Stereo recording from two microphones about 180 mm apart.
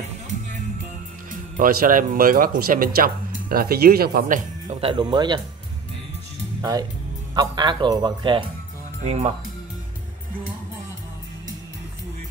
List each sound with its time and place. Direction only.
1.6 s speech: 50° right (ahead or behind)
4.7 s speech: 30° right (ahead or behind)
6.6 s speech: 20° right (ahead or behind)
9.0 s speech: 35° right (ahead or behind)